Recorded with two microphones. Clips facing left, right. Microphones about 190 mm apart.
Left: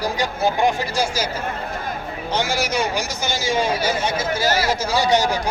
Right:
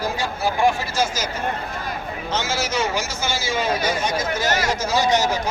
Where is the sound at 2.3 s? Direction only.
15° left (ahead or behind).